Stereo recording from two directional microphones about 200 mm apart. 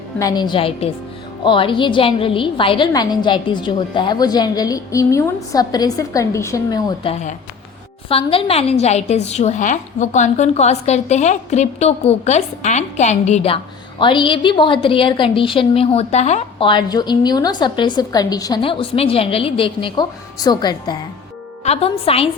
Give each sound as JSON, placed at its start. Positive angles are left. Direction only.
{"t": 0.2, "sound": "a woman's voice", "side_deg": 20}
{"t": 7.1, "sound": "a woman's voice", "side_deg": 35}
{"t": 21.6, "sound": "a woman's voice", "side_deg": 30}